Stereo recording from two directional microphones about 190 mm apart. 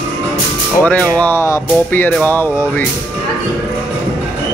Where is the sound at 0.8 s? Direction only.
10° left (ahead or behind).